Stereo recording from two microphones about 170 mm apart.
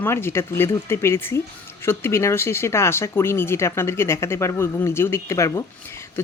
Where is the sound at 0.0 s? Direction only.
15° left (ahead or behind).